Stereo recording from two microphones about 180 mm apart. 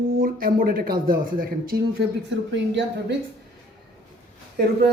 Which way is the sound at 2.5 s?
75° right (ahead or behind).